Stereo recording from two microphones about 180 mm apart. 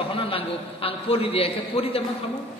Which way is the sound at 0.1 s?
30° left (ahead or behind).